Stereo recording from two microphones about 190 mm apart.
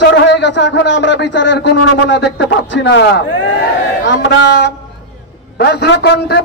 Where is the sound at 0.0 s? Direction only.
65° left (ahead or behind).